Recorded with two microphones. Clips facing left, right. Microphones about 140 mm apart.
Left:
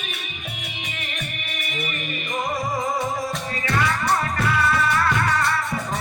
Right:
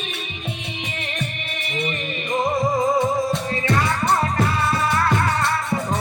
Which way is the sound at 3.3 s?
25° right (ahead or behind).